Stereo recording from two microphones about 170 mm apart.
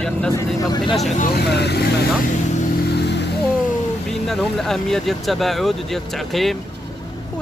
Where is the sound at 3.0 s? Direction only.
80° left.